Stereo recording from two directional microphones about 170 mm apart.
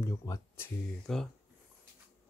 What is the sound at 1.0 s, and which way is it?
Speech, 5° left (ahead or behind).